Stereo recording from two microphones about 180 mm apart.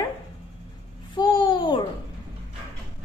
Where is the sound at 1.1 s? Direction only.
25° left (ahead or behind).